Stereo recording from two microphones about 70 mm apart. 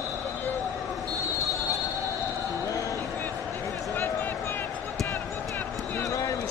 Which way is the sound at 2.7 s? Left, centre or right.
Left.